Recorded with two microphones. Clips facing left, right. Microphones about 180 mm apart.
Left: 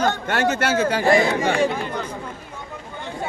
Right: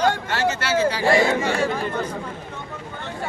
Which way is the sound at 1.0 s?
15° left (ahead or behind).